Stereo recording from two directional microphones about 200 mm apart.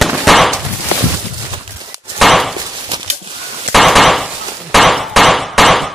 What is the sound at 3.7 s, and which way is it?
Hammer, centre (ahead or behind).